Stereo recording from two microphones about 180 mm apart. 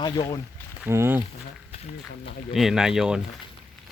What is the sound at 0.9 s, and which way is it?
Speech, 15° right (ahead or behind).